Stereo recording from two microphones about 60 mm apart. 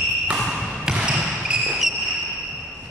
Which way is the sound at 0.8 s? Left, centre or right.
Centre.